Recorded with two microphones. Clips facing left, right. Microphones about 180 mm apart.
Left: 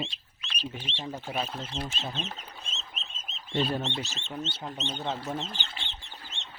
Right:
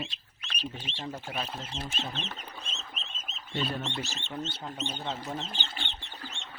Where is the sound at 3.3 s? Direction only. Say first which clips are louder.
Right 1 dB; centre (ahead or behind).